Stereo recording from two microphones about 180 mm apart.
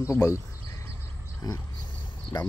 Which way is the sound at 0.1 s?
15° left (ahead or behind).